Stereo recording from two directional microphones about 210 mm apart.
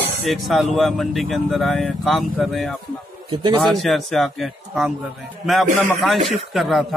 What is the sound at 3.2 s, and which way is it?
Speech, 25° right (ahead or behind).